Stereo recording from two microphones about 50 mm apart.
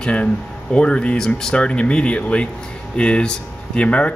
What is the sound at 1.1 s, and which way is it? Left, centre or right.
Speech, centre.